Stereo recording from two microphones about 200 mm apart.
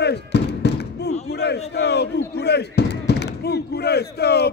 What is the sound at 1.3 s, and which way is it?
A man's voice, 55° left (ahead or behind).